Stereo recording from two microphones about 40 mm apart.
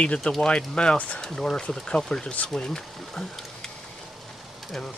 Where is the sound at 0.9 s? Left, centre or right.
Left.